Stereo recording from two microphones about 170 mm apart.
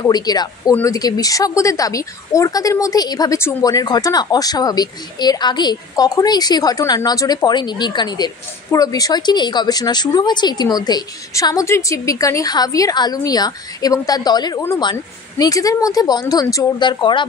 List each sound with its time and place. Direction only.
0.0 s speech: 25° left (ahead or behind)